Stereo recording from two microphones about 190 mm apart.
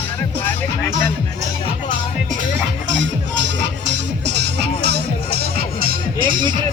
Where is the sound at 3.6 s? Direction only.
65° right (ahead or behind).